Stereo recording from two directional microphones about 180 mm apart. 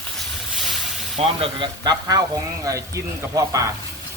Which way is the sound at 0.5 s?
Centre (ahead or behind).